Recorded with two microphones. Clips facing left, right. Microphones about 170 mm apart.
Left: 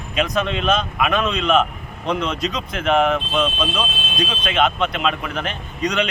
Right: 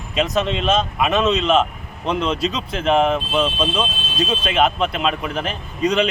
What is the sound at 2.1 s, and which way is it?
Speech, 30° right (ahead or behind).